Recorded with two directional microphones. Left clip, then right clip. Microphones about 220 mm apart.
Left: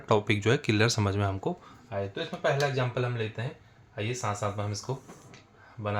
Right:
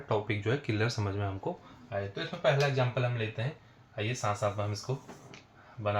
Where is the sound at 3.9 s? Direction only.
50° left (ahead or behind).